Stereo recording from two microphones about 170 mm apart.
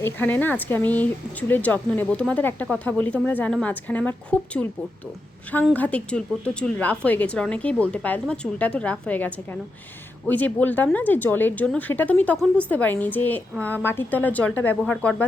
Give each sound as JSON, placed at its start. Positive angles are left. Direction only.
{"t": 0.0, "sound": "a woman's voice", "side_deg": 10}
{"t": 5.7, "sound": "a woman's voice", "side_deg": 10}